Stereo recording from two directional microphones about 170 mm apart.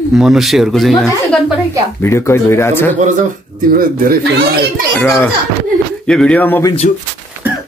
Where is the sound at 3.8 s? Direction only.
60° right (ahead or behind).